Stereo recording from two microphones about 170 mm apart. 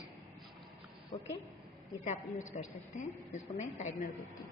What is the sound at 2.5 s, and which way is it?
Speech, 45° left (ahead or behind).